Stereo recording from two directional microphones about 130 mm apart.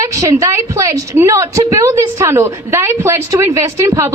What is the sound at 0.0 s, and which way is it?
A woman's voice, 25° right (ahead or behind).